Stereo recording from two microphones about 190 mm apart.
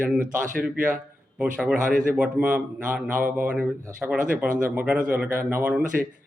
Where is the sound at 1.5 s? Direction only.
5° right (ahead or behind).